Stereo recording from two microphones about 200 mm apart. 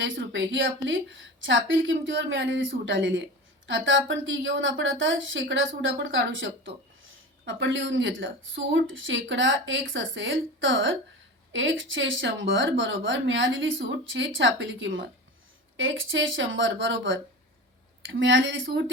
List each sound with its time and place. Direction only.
0.0 s speech: 70° right (ahead or behind)